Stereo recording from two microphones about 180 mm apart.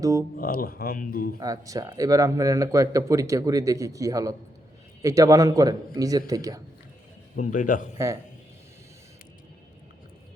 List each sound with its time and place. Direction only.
0.0 s a man's voice: 20° right (ahead or behind)
0.3 s speech: 55° left (ahead or behind)
1.4 s a man's voice: 20° right (ahead or behind)
7.3 s a man's voice: 45° left (ahead or behind)
7.9 s speech: 15° right (ahead or behind)